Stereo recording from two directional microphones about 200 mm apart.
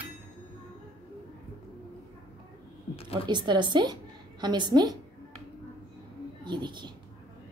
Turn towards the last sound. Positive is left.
turn(degrees=-20)  # may be behind; listen again after turning